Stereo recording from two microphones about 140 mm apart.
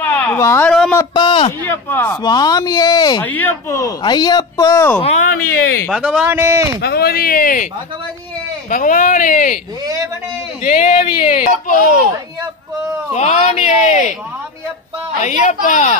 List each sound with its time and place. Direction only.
0.0 s a sound: 15° left (ahead or behind)
0.7 s speech: 5° left (ahead or behind)
1.1 s a man's voice: 35° left (ahead or behind)
1.6 s speech: 15° left (ahead or behind)
2.2 s speech: 30° left (ahead or behind)
3.2 s speech: 15° left (ahead or behind)
5.0 s speech: 60° left (ahead or behind)
5.9 s speech: 5° right (ahead or behind)
6.3 s a man's voice: 15° right (ahead or behind)
7.0 s speech: 90° left; by 9.6 s 65° left (ahead or behind)
10.6 s speech: 60° left (ahead or behind)
13.1 s speech: 55° left (ahead or behind)
15.2 s speech: 55° left (ahead or behind)